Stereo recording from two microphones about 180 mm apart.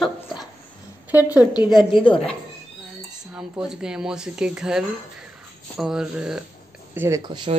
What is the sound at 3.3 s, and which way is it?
Speech, 5° right (ahead or behind).